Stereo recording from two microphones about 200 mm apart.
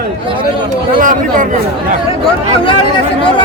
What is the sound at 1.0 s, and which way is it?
Speech, 40° right (ahead or behind).